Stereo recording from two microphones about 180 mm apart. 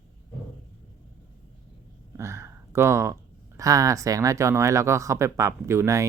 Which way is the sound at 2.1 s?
15° right (ahead or behind).